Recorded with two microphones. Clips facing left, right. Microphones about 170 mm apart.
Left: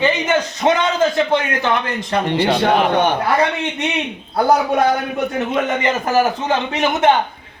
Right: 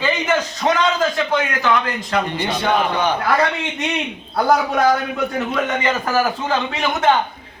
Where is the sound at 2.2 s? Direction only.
75° left (ahead or behind).